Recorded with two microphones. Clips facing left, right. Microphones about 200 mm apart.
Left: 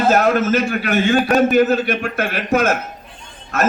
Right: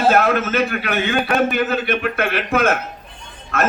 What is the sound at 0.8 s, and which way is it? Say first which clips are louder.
A man's voice: left 4 dB; 40° left (ahead or behind).